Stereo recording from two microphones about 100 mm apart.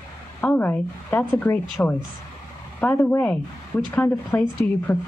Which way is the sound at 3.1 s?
20° left (ahead or behind).